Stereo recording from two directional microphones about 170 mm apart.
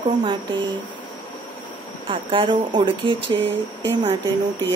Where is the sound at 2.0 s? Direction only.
30° right (ahead or behind).